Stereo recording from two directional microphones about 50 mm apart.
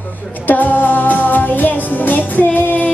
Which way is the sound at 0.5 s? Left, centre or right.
Left.